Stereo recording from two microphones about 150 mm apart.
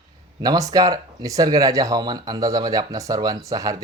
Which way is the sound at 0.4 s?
25° right (ahead or behind).